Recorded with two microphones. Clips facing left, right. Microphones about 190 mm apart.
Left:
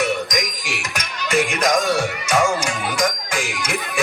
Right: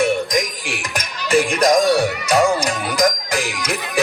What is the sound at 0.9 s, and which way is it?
Speech, 35° right (ahead or behind).